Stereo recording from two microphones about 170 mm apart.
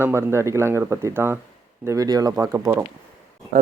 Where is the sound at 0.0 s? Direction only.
15° right (ahead or behind).